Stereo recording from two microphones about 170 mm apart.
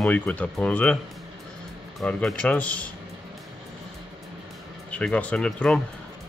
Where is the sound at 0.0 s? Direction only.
10° left (ahead or behind).